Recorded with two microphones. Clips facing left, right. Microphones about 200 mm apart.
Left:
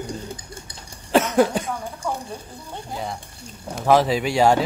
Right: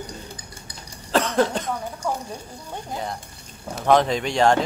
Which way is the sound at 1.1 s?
10° left (ahead or behind).